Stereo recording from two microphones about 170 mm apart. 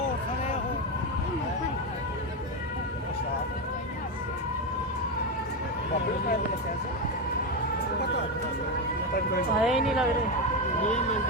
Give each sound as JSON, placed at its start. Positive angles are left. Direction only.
{"t": 9.6, "sound": "speech", "side_deg": -5}